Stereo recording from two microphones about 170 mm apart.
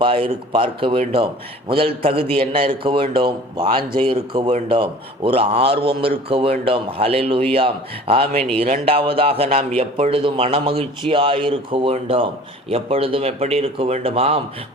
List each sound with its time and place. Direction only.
0.0 s a man's voice: 35° right (ahead or behind)